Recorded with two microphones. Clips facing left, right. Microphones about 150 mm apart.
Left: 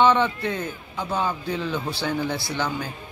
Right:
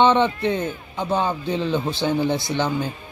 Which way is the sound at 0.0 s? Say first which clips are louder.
Right 2 dB; 25° right (ahead or behind).